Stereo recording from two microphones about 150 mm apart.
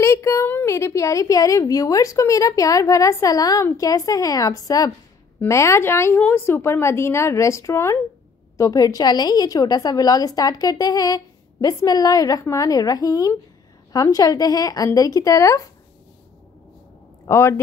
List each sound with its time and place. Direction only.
0.0 s a woman's voice: 20° left (ahead or behind)
17.3 s a woman's voice: 15° left (ahead or behind)